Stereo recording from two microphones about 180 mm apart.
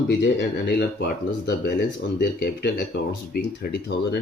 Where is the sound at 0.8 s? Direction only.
65° left (ahead or behind).